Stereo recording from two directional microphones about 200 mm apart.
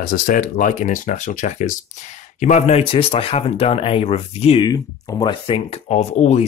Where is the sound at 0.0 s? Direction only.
45° left (ahead or behind).